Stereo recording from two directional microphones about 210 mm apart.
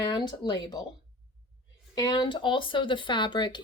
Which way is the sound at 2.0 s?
20° left (ahead or behind).